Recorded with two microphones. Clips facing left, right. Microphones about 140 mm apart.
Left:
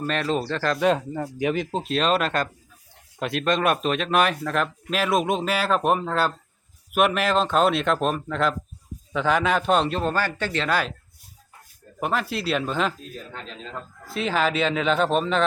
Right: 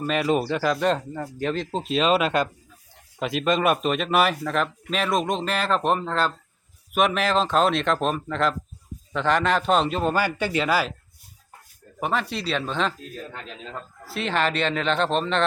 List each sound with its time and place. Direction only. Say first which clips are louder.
0.0 s speech: right 2 dB; 5° right (ahead or behind); by 1.8 s 10° left (ahead or behind)
1.8 s speech: right 3 dB; centre (ahead or behind)
11.9 s speech: even; centre (ahead or behind)